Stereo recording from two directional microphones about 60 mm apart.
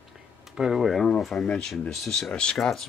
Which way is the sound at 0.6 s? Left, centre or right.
Centre.